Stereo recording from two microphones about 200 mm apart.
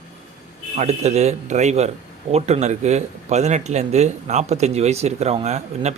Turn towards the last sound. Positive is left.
turn(degrees=-35)  # may be behind; listen again after turning